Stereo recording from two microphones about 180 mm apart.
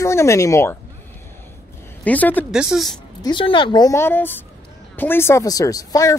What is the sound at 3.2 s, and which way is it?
A woman's voice, 25° left (ahead or behind).